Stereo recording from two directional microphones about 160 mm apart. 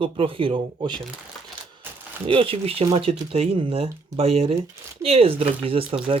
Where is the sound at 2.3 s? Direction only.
35° right (ahead or behind).